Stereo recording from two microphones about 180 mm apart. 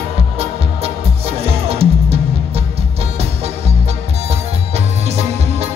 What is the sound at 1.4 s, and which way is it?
Music, 35° right (ahead or behind).